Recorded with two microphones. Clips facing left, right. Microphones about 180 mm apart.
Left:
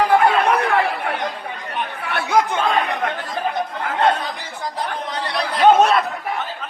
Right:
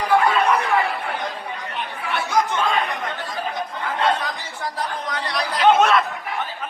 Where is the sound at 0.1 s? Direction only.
60° left (ahead or behind).